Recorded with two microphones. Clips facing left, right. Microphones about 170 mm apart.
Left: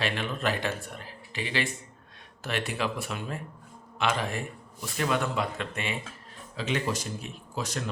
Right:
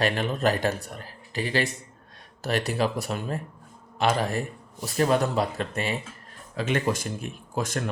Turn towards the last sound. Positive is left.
turn(degrees=-50)  # may be behind; listen again after turning